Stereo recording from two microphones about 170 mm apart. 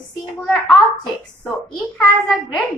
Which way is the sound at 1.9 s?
Centre (ahead or behind).